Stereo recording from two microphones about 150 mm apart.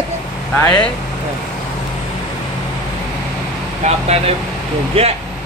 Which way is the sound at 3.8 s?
50° right (ahead or behind).